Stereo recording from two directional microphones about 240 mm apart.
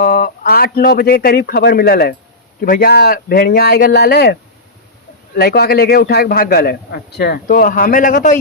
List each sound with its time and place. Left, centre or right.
0.0 s a man's voice: left